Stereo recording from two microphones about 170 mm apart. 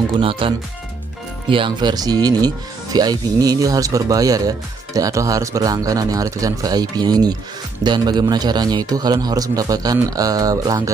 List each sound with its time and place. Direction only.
0.2 s speech: 30° right (ahead or behind)